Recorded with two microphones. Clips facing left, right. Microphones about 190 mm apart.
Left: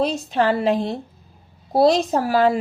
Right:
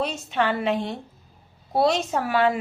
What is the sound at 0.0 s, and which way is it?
A woman's voice, 35° left (ahead or behind).